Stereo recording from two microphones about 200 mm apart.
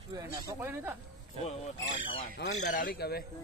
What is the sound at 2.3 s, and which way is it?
Speech, 45° left (ahead or behind).